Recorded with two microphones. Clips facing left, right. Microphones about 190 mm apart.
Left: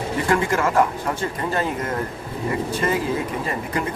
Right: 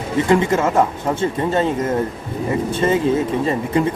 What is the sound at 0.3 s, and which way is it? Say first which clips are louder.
Speech: right 4 dB; 20° right (ahead or behind).